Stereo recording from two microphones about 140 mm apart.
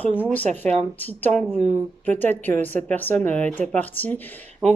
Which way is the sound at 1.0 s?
10° left (ahead or behind).